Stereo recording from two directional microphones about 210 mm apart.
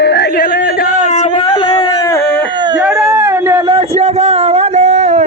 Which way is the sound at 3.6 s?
25° right (ahead or behind).